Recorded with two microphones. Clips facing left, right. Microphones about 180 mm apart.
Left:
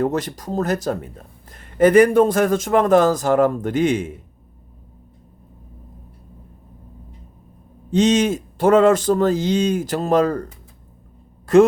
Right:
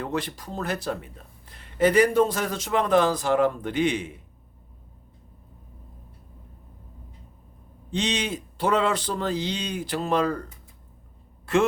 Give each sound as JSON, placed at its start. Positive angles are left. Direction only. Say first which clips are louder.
{"t": 0.0, "sound": "speech", "louder": "left 8 dB", "side_deg": 45}
{"t": 7.9, "sound": "speech", "louder": "left 11 dB", "side_deg": 45}